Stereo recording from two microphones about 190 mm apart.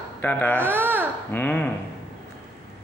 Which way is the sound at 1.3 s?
10° left (ahead or behind).